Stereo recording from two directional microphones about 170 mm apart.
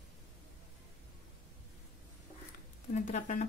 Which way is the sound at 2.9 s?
45° left (ahead or behind).